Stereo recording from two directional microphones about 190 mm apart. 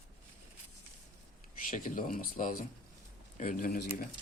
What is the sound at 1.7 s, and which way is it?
Speech, 45° left (ahead or behind).